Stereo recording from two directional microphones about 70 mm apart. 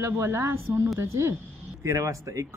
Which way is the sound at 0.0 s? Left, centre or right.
Right.